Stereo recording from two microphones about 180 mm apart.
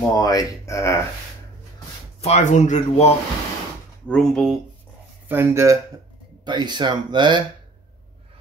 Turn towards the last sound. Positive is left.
turn(degrees=-25)  # may be behind; listen again after turning